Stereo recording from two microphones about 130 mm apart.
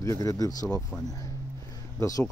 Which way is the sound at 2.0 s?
25° left (ahead or behind).